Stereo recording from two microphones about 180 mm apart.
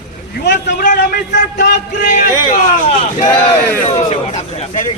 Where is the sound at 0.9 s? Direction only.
50° left (ahead or behind).